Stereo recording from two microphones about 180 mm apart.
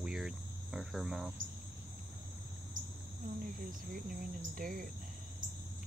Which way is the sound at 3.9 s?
50° right (ahead or behind).